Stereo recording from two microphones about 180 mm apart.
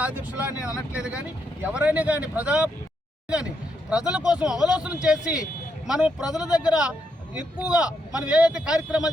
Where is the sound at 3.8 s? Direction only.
5° right (ahead or behind).